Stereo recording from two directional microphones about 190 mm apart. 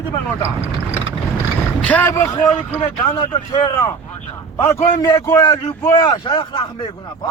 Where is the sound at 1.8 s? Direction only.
10° left (ahead or behind).